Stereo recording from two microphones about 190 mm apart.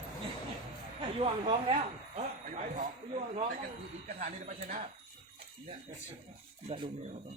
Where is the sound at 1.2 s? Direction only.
25° right (ahead or behind).